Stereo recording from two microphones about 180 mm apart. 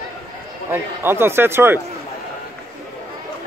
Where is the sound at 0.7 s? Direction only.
10° right (ahead or behind).